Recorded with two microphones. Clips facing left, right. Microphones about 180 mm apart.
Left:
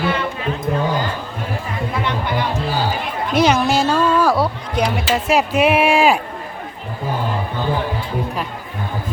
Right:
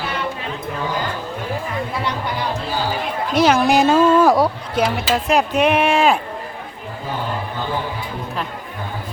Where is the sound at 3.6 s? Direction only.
15° right (ahead or behind); by 6.2 s 10° left (ahead or behind).